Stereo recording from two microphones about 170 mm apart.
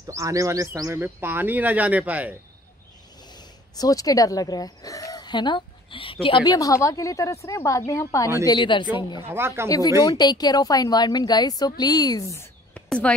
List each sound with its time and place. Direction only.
0.0 s speech: 20° right (ahead or behind)
3.3 s speech: 25° left (ahead or behind)
9.3 s speech: 15° right (ahead or behind)
9.7 s speech: 20° left (ahead or behind)
12.7 s a sound: 5° left (ahead or behind)